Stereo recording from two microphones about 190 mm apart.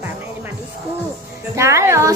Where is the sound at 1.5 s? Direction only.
15° right (ahead or behind).